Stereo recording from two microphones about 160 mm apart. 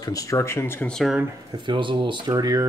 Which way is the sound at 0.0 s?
20° left (ahead or behind).